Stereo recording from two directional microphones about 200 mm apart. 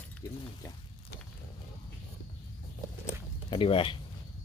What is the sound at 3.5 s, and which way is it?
Speech, 25° left (ahead or behind).